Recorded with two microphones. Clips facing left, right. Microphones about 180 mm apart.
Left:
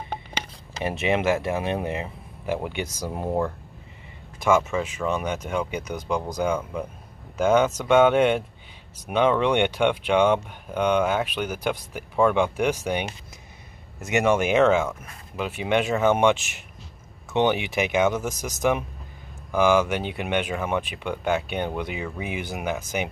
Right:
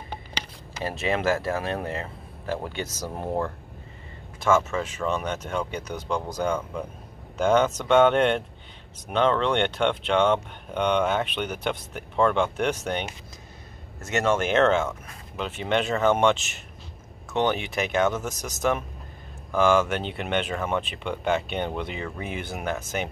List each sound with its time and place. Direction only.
0.8 s speech: 20° left (ahead or behind); by 22.8 s centre (ahead or behind)